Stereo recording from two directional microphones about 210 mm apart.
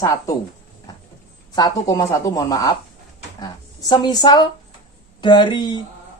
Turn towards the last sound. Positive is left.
turn(degrees=20)  # may be behind; listen again after turning